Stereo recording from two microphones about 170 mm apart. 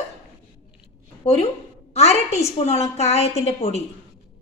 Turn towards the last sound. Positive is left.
turn(degrees=40)  # may be behind; listen again after turning